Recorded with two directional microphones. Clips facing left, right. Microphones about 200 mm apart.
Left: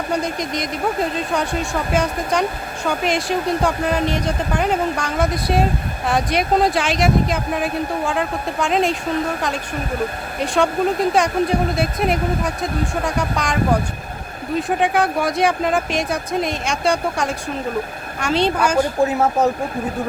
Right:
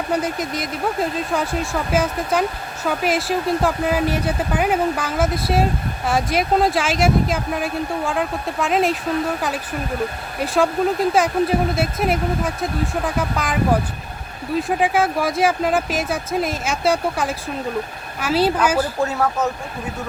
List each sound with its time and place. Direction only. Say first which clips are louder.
0.1 s speech: even; 5° right (ahead or behind)
10.4 s a woman's voice: even; centre (ahead or behind)
18.9 s speech: left 3 dB; 20° left (ahead or behind)